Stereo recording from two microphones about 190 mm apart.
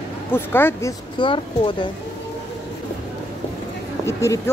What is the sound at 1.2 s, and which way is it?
Speech, 25° left (ahead or behind).